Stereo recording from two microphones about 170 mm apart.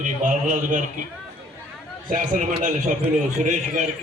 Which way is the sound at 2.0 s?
50° right (ahead or behind).